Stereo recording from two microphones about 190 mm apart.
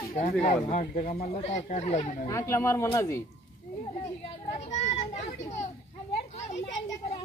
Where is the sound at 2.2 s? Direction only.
15° left (ahead or behind).